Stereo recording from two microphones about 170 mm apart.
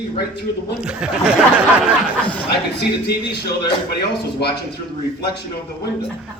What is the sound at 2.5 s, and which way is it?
Speech, 75° left (ahead or behind).